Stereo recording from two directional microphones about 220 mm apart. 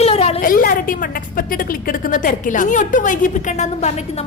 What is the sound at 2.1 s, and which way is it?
A woman's voice, 35° left (ahead or behind).